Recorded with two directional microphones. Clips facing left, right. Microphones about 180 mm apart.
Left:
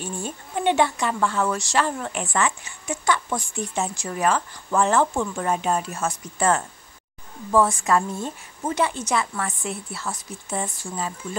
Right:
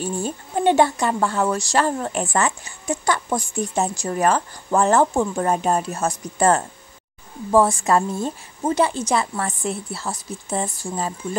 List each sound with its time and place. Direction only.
0.0 s speech: 40° right (ahead or behind)